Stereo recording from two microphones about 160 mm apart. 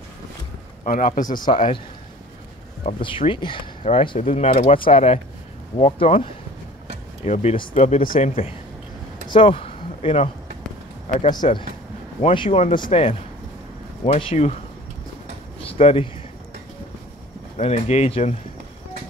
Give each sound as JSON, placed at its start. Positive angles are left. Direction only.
{"t": 0.8, "sound": "a man's voice", "side_deg": 60}
{"t": 1.5, "sound": "speech", "side_deg": 45}
{"t": 2.8, "sound": "speech", "side_deg": 35}
{"t": 7.2, "sound": "speech", "side_deg": 45}
{"t": 11.4, "sound": "speech", "side_deg": 40}
{"t": 15.6, "sound": "speech", "side_deg": 35}
{"t": 17.6, "sound": "speech", "side_deg": 40}